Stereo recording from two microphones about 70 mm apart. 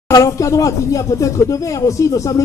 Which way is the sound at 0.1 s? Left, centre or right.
Left.